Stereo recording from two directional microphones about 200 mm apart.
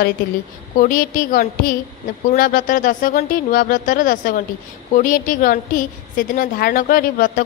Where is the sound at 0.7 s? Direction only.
40° left (ahead or behind).